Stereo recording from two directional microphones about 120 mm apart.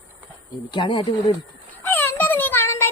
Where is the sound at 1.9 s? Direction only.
15° left (ahead or behind).